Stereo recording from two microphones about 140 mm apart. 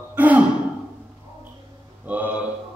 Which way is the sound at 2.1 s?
10° right (ahead or behind).